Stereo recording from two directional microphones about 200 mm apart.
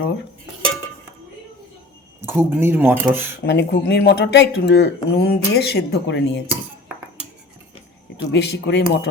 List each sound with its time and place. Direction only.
2.2 s speech: 10° right (ahead or behind)
3.4 s speech: 60° left (ahead or behind)
8.3 s speech: 55° left (ahead or behind)